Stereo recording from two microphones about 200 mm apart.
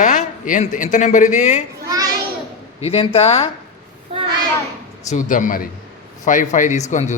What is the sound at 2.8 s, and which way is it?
Speech, 30° left (ahead or behind).